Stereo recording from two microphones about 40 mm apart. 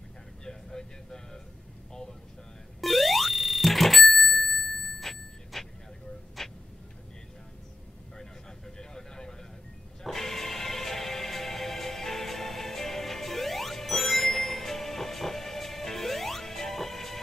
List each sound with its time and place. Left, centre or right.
0.5 s speech: centre
2.8 s a sound: centre
6.4 s tick-tock: centre
8.2 s vehicle: centre
10.0 s music: centre